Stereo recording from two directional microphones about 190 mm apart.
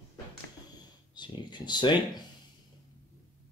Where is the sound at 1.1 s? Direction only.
25° left (ahead or behind).